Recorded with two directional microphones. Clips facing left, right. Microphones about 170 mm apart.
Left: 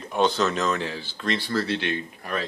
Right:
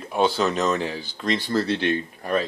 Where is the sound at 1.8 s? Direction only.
40° right (ahead or behind).